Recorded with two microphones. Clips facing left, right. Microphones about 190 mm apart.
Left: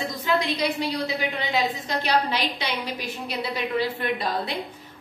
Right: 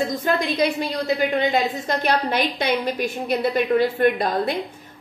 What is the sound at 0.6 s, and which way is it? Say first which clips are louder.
A woman's voice: right 4 dB; 50° right (ahead or behind).